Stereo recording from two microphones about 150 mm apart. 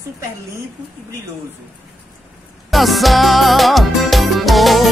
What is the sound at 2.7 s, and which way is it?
Music, centre (ahead or behind).